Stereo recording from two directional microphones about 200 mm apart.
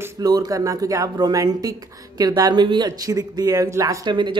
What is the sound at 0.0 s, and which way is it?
Speech, 20° right (ahead or behind).